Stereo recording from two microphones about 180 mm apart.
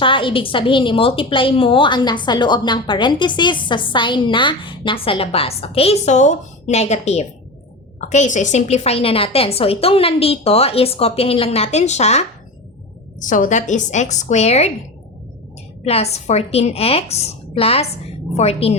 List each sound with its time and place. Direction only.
0.0 s a woman's voice: 30° left (ahead or behind)
15.8 s a woman's voice: 35° left (ahead or behind)